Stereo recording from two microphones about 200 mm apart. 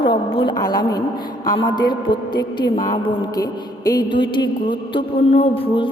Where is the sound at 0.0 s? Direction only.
25° left (ahead or behind).